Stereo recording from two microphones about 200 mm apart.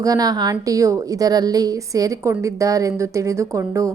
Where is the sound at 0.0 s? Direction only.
20° right (ahead or behind).